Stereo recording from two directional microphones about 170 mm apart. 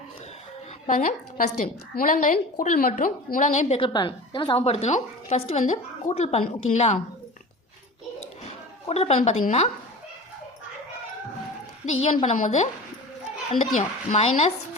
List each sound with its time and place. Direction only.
0.9 s a woman's voice: 50° left (ahead or behind)
3.8 s a woman's voice: 30° left (ahead or behind)
8.9 s a woman's voice: 40° left (ahead or behind)
11.9 s a woman's voice: 40° left (ahead or behind)